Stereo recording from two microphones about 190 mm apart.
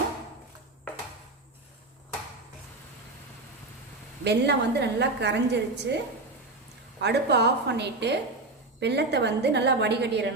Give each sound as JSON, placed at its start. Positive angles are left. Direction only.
{"t": 4.2, "sound": "a woman's voice", "side_deg": -60}
{"t": 7.0, "sound": "a woman's voice", "side_deg": -60}